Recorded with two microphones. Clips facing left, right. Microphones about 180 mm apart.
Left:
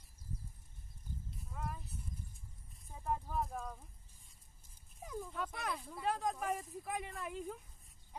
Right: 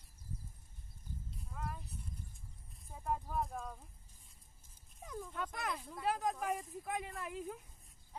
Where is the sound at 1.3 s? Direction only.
Centre (ahead or behind).